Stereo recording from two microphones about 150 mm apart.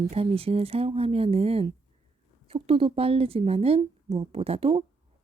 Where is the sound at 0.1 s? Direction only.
40° right (ahead or behind).